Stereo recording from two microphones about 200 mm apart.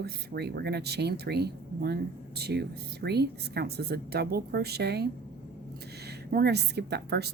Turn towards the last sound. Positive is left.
turn(degrees=-55)  # may be behind; listen again after turning